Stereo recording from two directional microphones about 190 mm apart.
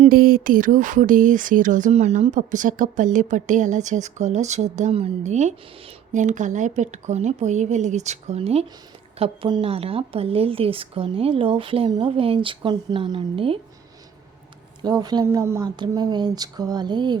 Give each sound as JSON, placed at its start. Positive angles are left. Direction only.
{"t": 0.0, "sound": "a woman's voice", "side_deg": -50}
{"t": 14.8, "sound": "a woman's voice", "side_deg": -20}